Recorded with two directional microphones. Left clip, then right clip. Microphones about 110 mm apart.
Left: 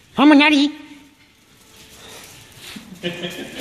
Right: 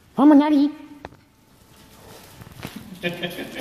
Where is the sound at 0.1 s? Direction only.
40° left (ahead or behind).